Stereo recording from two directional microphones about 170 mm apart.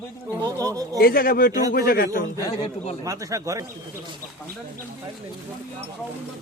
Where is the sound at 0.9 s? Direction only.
60° left (ahead or behind).